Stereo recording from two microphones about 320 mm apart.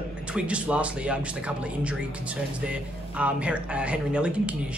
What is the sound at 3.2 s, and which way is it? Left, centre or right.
Speech, centre.